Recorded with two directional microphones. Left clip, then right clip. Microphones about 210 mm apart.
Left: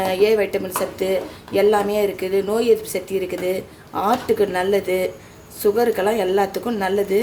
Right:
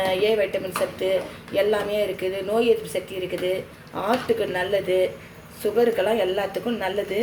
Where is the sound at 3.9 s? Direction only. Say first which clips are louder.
Left 4 dB; 55° left (ahead or behind).